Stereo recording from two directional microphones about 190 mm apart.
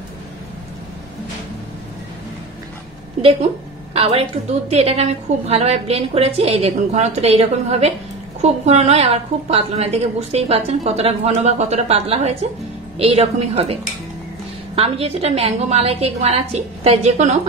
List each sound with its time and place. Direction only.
3.9 s a woman's voice: 30° right (ahead or behind)
14.8 s a woman's voice: 30° right (ahead or behind)